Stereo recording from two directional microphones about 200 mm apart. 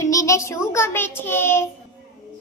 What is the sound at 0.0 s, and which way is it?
A child's voice, 15° left (ahead or behind).